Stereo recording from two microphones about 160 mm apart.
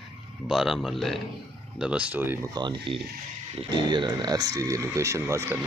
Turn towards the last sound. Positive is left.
turn(degrees=-15)  # may be behind; listen again after turning